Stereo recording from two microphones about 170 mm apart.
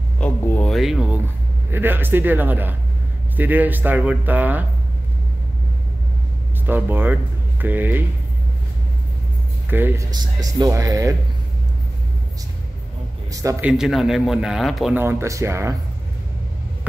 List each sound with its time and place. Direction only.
0.2 s a sound: 10° left (ahead or behind)
1.7 s speech: 10° right (ahead or behind)
6.6 s speech: 10° right (ahead or behind)
9.7 s speech: 10° right (ahead or behind)
13.3 s a man's voice: 20° right (ahead or behind)
13.6 s a man's voice: 5° right (ahead or behind)
15.0 s speech: 15° right (ahead or behind)